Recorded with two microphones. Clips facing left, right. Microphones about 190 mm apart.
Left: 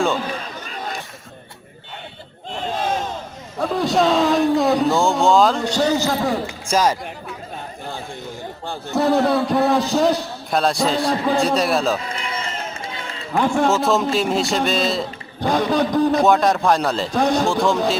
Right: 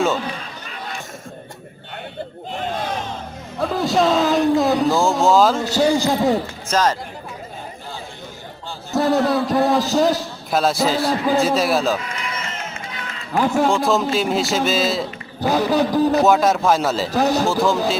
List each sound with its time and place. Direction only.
3.6 s a sound: centre (ahead or behind)
6.7 s speech: 10° left (ahead or behind)
9.0 s a man's voice: centre (ahead or behind)
12.0 s run: 30° left (ahead or behind)
13.3 s a man's voice: 5° right (ahead or behind)